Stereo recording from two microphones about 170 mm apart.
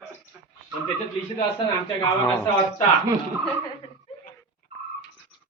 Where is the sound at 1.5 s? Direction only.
20° left (ahead or behind).